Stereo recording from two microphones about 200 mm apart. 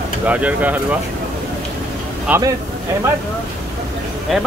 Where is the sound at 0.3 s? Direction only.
5° right (ahead or behind).